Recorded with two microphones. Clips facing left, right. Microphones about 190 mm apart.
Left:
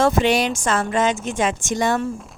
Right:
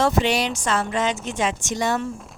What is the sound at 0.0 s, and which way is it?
Speech, 50° left (ahead or behind).